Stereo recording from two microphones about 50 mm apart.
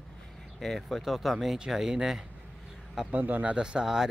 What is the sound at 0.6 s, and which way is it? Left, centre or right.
Speech, centre.